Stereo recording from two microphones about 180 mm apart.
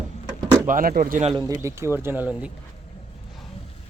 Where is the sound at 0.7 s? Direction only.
50° right (ahead or behind).